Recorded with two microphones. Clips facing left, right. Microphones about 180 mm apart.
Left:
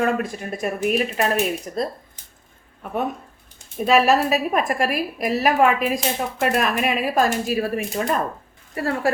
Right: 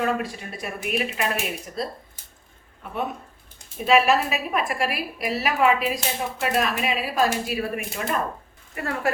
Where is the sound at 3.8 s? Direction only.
40° left (ahead or behind).